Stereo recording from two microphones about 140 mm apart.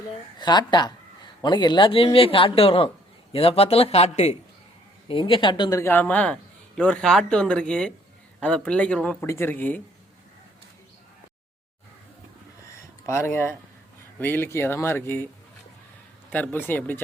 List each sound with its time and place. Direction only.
0.3 s a man's voice: 30° left (ahead or behind); by 4.4 s 50° left (ahead or behind)
5.0 s a man's voice: 35° left (ahead or behind)
5.8 s a man's voice: 15° left (ahead or behind)
9.2 s a man's voice: 20° left (ahead or behind)
12.7 s a sound: 20° left (ahead or behind)
14.2 s a man's voice: 15° left (ahead or behind)
16.3 s a man's voice: 10° left (ahead or behind)